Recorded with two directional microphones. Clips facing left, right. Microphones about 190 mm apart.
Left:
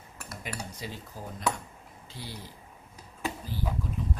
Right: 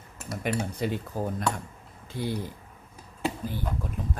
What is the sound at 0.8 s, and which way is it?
Speech, 60° right (ahead or behind).